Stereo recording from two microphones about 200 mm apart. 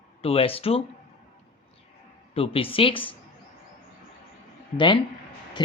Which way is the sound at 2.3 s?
30° left (ahead or behind).